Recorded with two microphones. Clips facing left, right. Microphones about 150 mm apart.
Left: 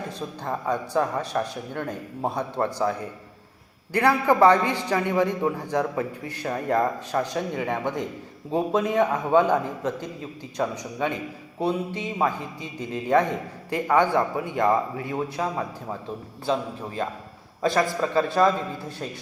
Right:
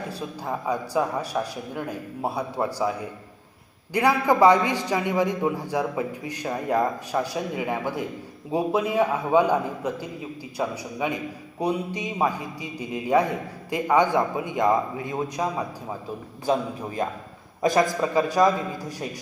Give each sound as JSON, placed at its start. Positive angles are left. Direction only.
{"t": 0.1, "sound": "a man's voice", "side_deg": -10}